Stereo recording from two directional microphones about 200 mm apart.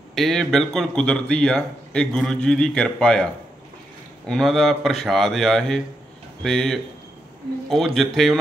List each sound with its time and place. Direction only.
0.1 s speech: centre (ahead or behind)
4.3 s speech: centre (ahead or behind)